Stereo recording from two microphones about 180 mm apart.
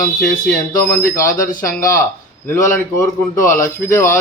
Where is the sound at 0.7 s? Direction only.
15° left (ahead or behind).